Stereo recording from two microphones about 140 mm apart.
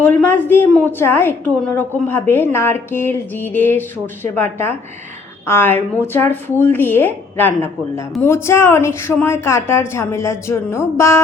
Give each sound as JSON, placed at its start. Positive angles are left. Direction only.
{"t": 0.0, "sound": "a woman's voice", "side_deg": 10}
{"t": 5.5, "sound": "a woman's voice", "side_deg": 15}